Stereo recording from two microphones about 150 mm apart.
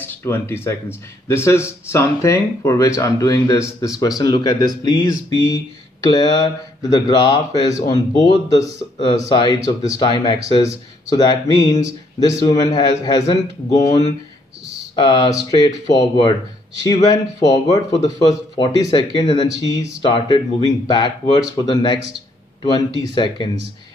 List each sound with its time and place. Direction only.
0.0 s speech: 15° left (ahead or behind); by 23.5 s 30° left (ahead or behind)